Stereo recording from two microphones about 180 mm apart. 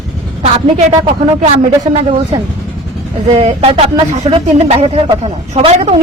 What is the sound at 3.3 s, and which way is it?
A woman's voice, 35° right (ahead or behind).